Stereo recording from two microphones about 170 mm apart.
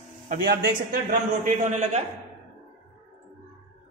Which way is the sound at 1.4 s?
45° right (ahead or behind).